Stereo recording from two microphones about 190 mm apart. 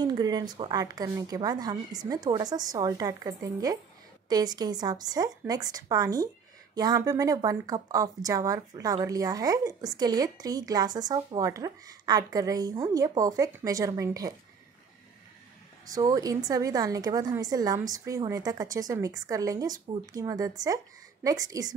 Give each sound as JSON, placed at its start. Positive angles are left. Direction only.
{"t": 0.0, "sound": "speech", "side_deg": -20}
{"t": 15.9, "sound": "speech", "side_deg": -20}